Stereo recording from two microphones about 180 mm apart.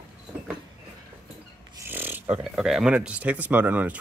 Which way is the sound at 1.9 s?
10° right (ahead or behind).